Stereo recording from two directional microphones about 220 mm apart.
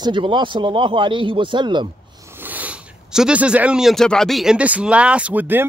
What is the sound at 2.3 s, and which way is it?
Speech, 10° right (ahead or behind).